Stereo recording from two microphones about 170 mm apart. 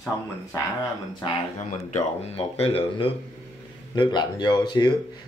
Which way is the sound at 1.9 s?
35° left (ahead or behind).